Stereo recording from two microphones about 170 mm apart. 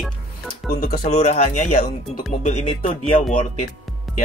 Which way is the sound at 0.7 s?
60° left (ahead or behind).